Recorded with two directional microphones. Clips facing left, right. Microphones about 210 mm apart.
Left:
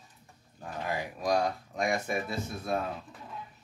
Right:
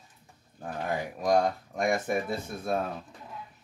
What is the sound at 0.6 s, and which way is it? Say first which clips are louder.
Speech: right 3 dB; 50° right (ahead or behind).